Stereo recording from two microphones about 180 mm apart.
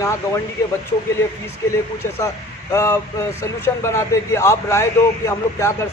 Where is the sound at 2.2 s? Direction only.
15° left (ahead or behind).